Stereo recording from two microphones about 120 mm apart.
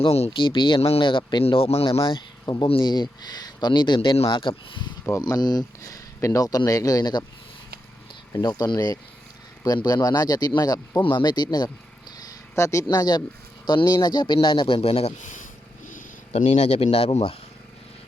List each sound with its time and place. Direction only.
0.0 s speech: 55° left (ahead or behind)
0.3 s speech: 40° left (ahead or behind)
8.3 s speech: 35° left (ahead or behind)
12.1 s a sound: 30° left (ahead or behind)
13.7 s speech: 35° left (ahead or behind)
14.8 s speech: 55° left (ahead or behind); by 15.4 s 90° left
15.9 s purr: 90° left
16.5 s speech: 65° left (ahead or behind)